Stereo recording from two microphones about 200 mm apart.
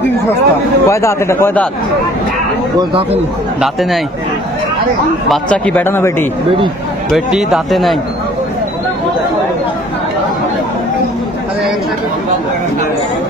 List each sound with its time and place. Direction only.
0.8 s speech: 15° left (ahead or behind)
2.8 s speech: 25° right (ahead or behind)
5.3 s speech: 5° left (ahead or behind)
7.1 s speech: centre (ahead or behind)